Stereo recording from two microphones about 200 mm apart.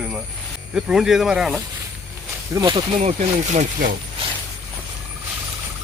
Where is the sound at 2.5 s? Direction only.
20° right (ahead or behind).